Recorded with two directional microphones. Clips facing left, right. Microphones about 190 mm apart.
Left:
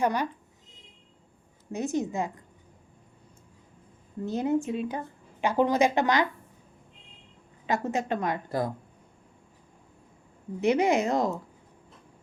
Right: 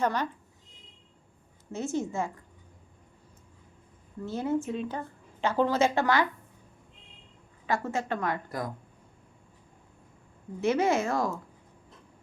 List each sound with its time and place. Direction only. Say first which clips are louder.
0.0 s a woman's voice: left 2 dB; 15° left (ahead or behind)
1.7 s a woman's voice: left 2 dB; 15° left (ahead or behind)
4.3 s a woman's voice: left 3 dB; 20° left (ahead or behind)
7.7 s a woman's voice: left 2 dB; 20° left (ahead or behind)
10.6 s a woman's voice: left 2 dB; 15° left (ahead or behind)